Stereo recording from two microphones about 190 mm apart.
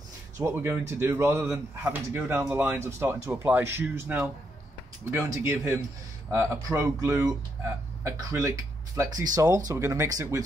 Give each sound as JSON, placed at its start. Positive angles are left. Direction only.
{"t": 0.4, "sound": "speech", "side_deg": -15}